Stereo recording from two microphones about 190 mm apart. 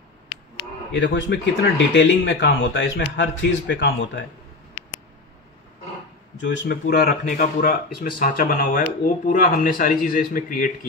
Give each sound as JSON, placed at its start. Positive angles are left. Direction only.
{"t": 0.3, "sound": "speech", "side_deg": 65}
{"t": 6.3, "sound": "speech", "side_deg": 70}